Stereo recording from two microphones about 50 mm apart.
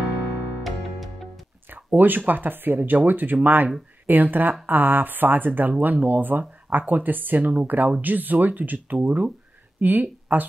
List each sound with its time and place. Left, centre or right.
0.7 s music: centre
1.7 s speech: right